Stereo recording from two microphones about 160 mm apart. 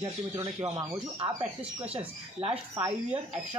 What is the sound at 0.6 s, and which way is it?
Speech, 25° right (ahead or behind).